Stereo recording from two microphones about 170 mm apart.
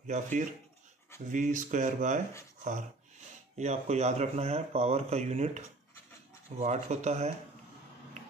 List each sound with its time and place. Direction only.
0.0 s speech: 45° right (ahead or behind)
3.5 s speech: 40° right (ahead or behind)
6.6 s speech: 40° right (ahead or behind)